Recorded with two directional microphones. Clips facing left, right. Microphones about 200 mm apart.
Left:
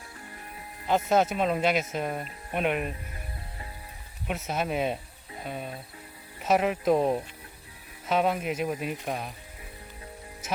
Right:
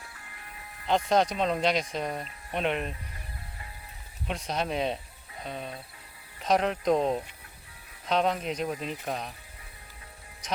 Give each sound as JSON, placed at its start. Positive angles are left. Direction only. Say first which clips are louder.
{"t": 0.9, "sound": "speech", "louder": "left 1 dB", "side_deg": 5}
{"t": 4.3, "sound": "speech", "louder": "left 1 dB", "side_deg": 5}